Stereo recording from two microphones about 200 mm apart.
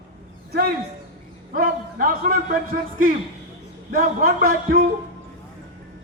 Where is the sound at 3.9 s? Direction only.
45° right (ahead or behind).